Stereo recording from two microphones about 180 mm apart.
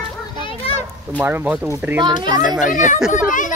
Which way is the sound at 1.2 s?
10° right (ahead or behind).